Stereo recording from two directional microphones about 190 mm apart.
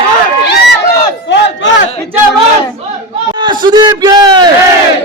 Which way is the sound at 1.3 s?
65° left (ahead or behind).